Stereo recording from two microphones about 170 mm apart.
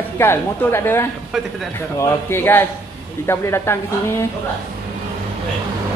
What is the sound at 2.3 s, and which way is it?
A woman's voice, 15° left (ahead or behind).